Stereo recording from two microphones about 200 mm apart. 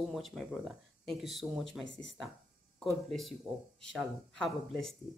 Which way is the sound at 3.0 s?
Centre (ahead or behind).